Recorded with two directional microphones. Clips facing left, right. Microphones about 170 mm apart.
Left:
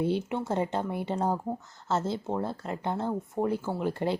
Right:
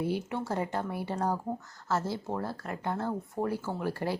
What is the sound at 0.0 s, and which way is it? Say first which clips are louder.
Speech: left 3 dB; 20° left (ahead or behind).